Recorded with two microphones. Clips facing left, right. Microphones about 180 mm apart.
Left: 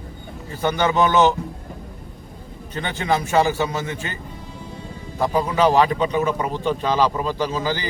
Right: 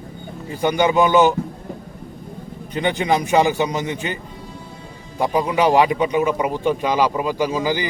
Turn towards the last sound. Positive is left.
turn(degrees=-15)  # may be behind; listen again after turning